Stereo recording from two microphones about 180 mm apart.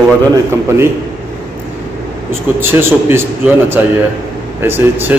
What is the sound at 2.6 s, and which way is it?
A man's voice, 15° right (ahead or behind).